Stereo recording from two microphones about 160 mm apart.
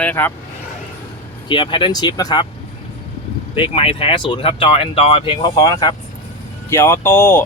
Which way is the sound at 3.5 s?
35° left (ahead or behind).